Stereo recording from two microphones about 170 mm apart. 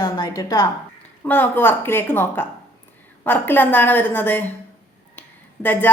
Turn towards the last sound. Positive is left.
turn(degrees=10)  # may be behind; listen again after turning